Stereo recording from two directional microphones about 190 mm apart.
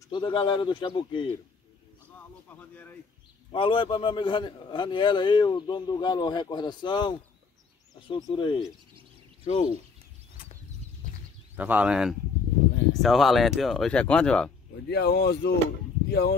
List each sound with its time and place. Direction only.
0.1 s a man's voice: 25° left (ahead or behind)
3.5 s a man's voice: 30° left (ahead or behind)
11.5 s speech: 10° right (ahead or behind)
14.9 s speech: 60° left (ahead or behind)